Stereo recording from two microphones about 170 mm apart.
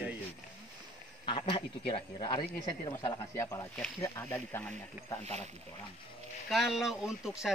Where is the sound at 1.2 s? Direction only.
30° left (ahead or behind).